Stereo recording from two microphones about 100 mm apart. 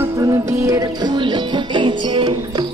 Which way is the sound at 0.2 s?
35° right (ahead or behind).